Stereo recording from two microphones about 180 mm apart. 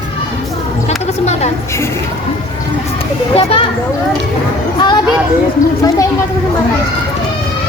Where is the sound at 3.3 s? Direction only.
30° left (ahead or behind).